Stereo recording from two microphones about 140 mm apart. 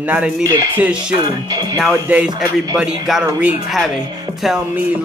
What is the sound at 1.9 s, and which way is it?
Speech, 10° right (ahead or behind).